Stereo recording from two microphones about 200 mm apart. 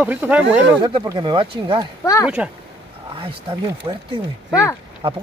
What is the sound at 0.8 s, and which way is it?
Speech, 20° right (ahead or behind).